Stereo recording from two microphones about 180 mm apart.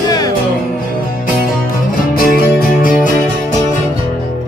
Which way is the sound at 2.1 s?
55° left (ahead or behind).